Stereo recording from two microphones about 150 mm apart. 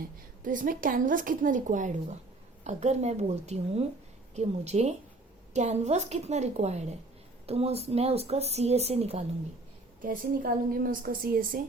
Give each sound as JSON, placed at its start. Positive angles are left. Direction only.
{"t": 0.0, "sound": "a woman's voice", "side_deg": -65}
{"t": 10.0, "sound": "a woman's voice", "side_deg": -70}